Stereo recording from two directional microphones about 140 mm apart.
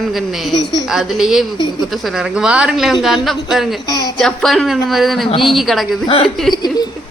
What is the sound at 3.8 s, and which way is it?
Speech, 30° left (ahead or behind).